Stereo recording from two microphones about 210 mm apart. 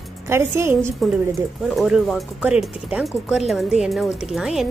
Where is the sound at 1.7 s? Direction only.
Centre (ahead or behind).